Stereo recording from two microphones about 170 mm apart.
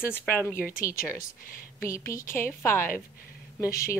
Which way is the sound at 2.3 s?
15° left (ahead or behind).